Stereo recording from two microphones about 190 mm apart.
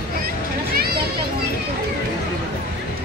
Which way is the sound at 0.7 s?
55° right (ahead or behind).